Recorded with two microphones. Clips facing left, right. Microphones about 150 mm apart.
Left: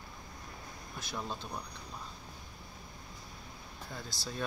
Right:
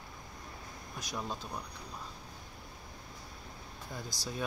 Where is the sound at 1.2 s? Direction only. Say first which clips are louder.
Even; centre (ahead or behind).